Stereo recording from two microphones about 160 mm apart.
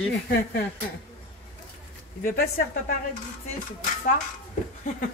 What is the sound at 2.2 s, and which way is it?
Speech, 65° left (ahead or behind).